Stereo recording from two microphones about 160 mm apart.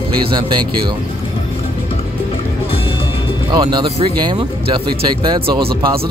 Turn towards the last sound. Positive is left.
turn(degrees=-30)  # may be behind; listen again after turning